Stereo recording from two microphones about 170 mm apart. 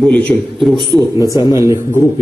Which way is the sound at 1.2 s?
20° left (ahead or behind).